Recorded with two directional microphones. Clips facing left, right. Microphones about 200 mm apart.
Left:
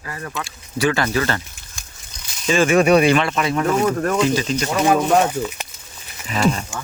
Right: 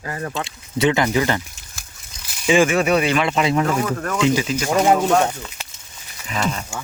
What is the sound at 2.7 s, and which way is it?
Speech, 35° left (ahead or behind).